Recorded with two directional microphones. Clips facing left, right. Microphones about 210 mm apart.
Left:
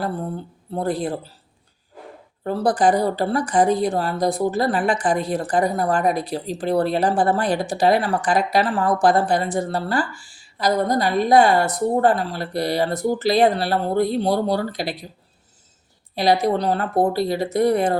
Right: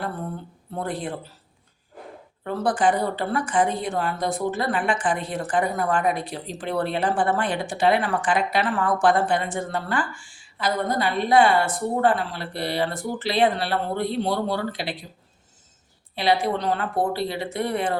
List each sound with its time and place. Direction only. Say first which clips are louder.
0.7 s speech: left 6 dB; 35° left (ahead or behind)
2.4 s speech: left 4 dB; 35° left (ahead or behind)
16.1 s speech: left 4 dB; 40° left (ahead or behind)